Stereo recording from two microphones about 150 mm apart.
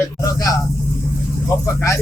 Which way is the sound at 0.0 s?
20° left (ahead or behind).